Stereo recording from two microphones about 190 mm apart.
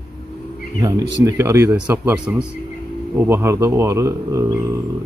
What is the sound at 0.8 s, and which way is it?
A man's voice, 15° right (ahead or behind).